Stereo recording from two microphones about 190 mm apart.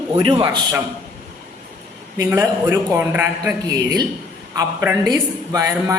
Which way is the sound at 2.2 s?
10° right (ahead or behind).